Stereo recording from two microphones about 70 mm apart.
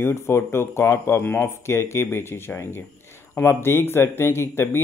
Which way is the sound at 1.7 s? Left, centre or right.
Left.